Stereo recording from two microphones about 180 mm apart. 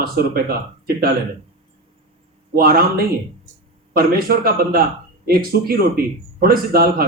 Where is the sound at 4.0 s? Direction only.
55° right (ahead or behind).